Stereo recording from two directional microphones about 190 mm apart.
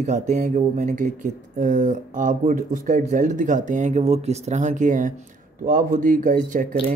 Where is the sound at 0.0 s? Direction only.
40° right (ahead or behind).